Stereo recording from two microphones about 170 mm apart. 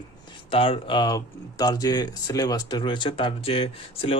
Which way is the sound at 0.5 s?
30° left (ahead or behind).